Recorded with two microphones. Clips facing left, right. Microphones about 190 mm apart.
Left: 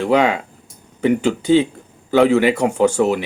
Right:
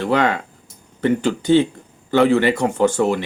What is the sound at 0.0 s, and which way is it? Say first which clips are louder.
Speech: left 3 dB; 10° left (ahead or behind).